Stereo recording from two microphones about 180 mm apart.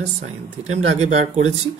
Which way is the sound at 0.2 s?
40° right (ahead or behind).